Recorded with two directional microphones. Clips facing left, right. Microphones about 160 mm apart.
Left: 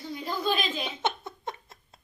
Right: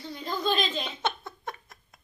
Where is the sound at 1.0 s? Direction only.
20° left (ahead or behind).